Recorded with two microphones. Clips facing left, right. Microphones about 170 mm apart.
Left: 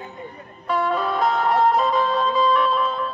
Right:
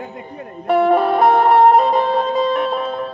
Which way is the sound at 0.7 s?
60° right (ahead or behind).